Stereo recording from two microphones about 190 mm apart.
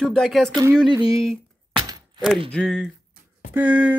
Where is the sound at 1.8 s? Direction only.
20° right (ahead or behind).